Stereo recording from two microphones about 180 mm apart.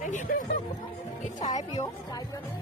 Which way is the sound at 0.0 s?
45° left (ahead or behind).